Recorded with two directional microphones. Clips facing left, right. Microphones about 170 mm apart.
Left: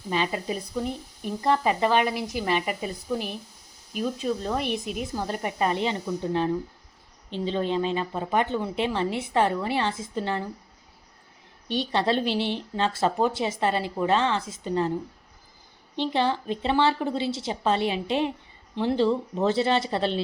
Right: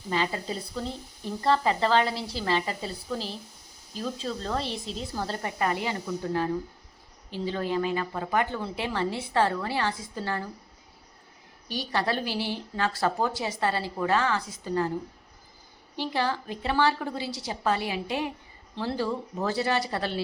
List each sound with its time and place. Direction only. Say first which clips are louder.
0.1 s speech: left 2 dB; 15° left (ahead or behind)
11.7 s speech: left 4 dB; 25° left (ahead or behind)
16.0 s speech: left 4 dB; 20° left (ahead or behind)